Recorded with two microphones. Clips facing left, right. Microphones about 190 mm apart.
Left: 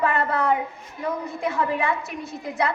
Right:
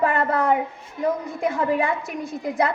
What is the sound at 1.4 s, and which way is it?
Speech, 50° right (ahead or behind).